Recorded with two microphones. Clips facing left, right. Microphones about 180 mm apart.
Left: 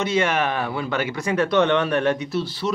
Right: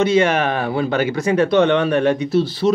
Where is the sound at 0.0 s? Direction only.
30° right (ahead or behind).